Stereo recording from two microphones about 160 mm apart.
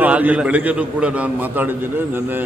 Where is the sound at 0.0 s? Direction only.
10° right (ahead or behind).